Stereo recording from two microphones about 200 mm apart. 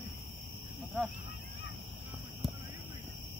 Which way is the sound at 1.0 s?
5° right (ahead or behind).